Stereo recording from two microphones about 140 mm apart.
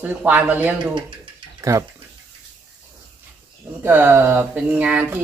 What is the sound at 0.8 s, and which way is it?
Speech, 35° right (ahead or behind).